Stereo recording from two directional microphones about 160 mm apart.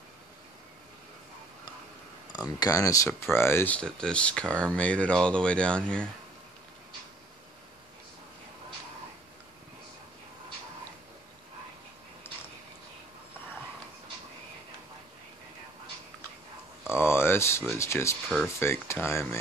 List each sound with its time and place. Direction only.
2.3 s speech: 25° left (ahead or behind); by 6.0 s 5° left (ahead or behind)
16.9 s a sound: 15° left (ahead or behind)
18.6 s speech: 15° left (ahead or behind)